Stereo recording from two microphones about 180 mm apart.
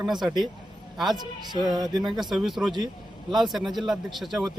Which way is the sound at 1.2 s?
25° right (ahead or behind).